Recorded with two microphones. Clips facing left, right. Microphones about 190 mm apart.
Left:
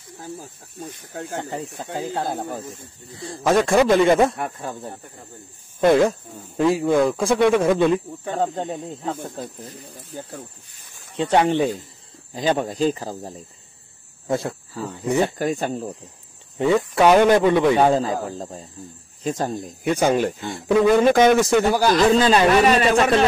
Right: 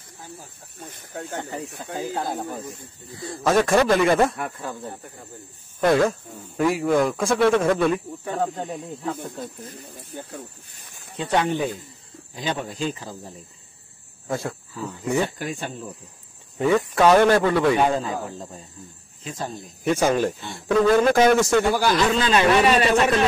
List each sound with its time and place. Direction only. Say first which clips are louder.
1.3 s speech: left 3 dB; 30° left (ahead or behind)
5.8 s speech: left 3 dB; 20° left (ahead or behind)
11.1 s speech: left 4 dB; 30° left (ahead or behind)
12.4 s a man's voice: left 7 dB; 40° left (ahead or behind)
14.2 s speech: left 4 dB; 25° left (ahead or behind)
15.3 s a man's voice: left 7 dB; 40° left (ahead or behind)
16.7 s speech: left 1 dB; 15° left (ahead or behind)
17.7 s a man's voice: left 4 dB; 35° left (ahead or behind)
19.8 s speech: left 1 dB; 15° left (ahead or behind)
21.7 s a man's voice: left 4 dB; 40° left (ahead or behind)